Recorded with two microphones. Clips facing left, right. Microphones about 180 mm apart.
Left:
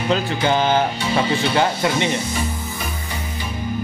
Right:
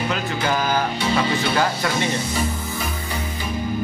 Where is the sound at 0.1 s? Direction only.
25° left (ahead or behind).